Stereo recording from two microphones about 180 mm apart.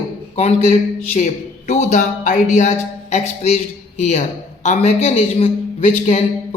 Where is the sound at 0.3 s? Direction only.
35° left (ahead or behind).